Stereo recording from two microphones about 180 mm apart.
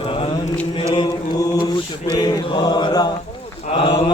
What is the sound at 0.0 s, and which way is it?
Chant, 30° left (ahead or behind).